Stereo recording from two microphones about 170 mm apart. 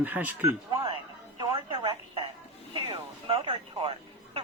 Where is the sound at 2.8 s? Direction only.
30° right (ahead or behind).